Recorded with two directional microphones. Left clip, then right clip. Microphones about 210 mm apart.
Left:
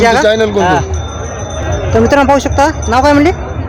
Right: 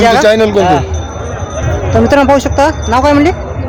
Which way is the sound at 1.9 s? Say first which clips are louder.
Right 1 dB; centre (ahead or behind).